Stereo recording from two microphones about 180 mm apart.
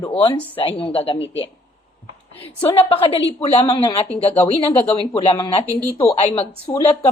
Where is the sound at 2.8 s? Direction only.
30° left (ahead or behind).